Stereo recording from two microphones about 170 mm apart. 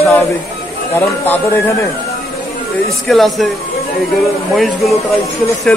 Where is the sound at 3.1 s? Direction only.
Centre (ahead or behind).